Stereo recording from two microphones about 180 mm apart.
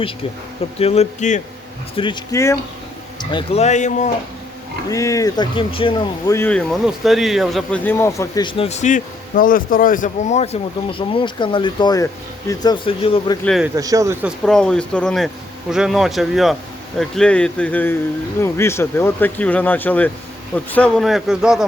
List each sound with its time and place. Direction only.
0.8 s speech: 35° left (ahead or behind)
2.0 s speech: 30° left (ahead or behind)
3.6 s speech: 40° left (ahead or behind)
4.9 s speech: 20° left (ahead or behind)
6.3 s speech: 10° left (ahead or behind)
6.8 s speech: centre (ahead or behind); by 13.4 s 30° left (ahead or behind)
13.4 s a man's voice: centre (ahead or behind)
13.7 s speech: 20° right (ahead or behind)
14.4 s a man's voice: 5° left (ahead or behind)